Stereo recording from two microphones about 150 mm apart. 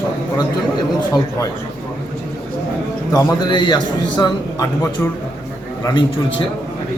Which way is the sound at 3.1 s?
30° left (ahead or behind).